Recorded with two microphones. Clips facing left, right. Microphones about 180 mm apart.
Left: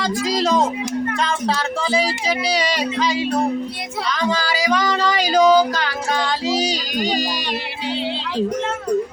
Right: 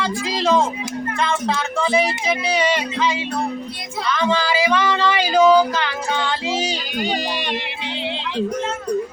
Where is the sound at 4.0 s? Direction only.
35° left (ahead or behind).